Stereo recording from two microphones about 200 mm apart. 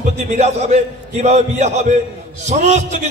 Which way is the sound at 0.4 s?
30° right (ahead or behind).